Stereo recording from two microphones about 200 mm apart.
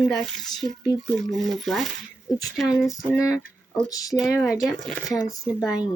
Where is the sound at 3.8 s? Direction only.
15° left (ahead or behind).